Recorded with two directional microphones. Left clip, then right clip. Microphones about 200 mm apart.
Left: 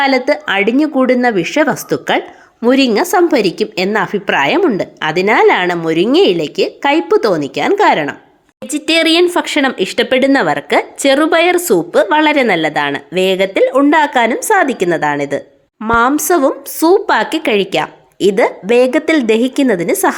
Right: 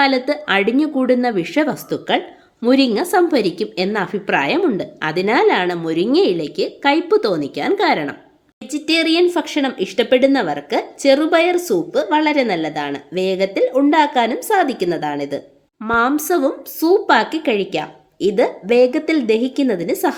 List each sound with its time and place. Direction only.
0.0 s a woman's voice: 15° left (ahead or behind)